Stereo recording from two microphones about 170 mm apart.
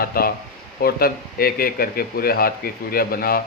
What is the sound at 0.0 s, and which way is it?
Speech, 60° left (ahead or behind).